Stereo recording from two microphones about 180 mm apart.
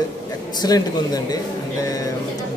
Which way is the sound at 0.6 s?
20° left (ahead or behind).